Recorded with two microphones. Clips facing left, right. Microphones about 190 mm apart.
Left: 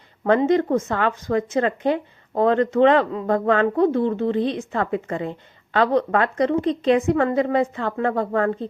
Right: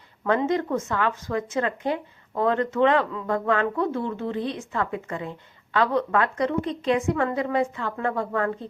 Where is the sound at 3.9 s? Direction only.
60° left (ahead or behind).